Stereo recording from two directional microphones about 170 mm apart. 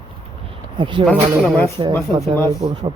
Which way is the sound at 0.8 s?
30° right (ahead or behind).